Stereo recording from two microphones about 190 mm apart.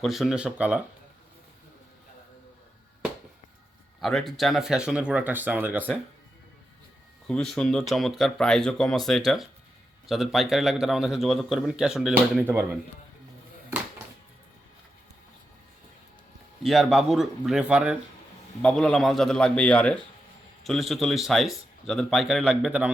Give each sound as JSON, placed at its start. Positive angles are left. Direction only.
{"t": 0.0, "sound": "a man's voice", "side_deg": 0}
{"t": 4.0, "sound": "a man's voice", "side_deg": 0}
{"t": 7.3, "sound": "a man's voice", "side_deg": 5}
{"t": 16.6, "sound": "a man's voice", "side_deg": 0}